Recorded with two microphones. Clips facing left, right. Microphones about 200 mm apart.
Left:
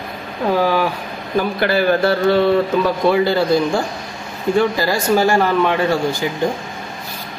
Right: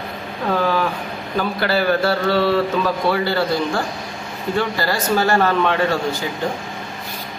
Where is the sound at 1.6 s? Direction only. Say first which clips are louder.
Left 2 dB; 50° left (ahead or behind).